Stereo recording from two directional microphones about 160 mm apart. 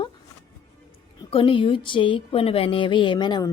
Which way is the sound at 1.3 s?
35° left (ahead or behind).